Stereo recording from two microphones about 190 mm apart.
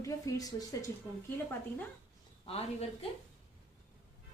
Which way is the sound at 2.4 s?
30° left (ahead or behind).